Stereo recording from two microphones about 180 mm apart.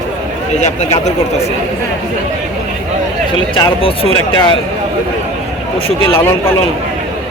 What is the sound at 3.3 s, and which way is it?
Speech, 30° left (ahead or behind).